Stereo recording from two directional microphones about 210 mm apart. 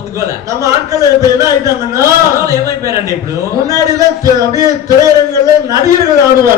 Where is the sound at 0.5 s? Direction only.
15° right (ahead or behind).